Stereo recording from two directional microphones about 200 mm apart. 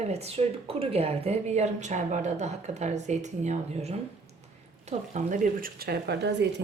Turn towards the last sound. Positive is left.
turn(degrees=-60)  # may be behind; listen again after turning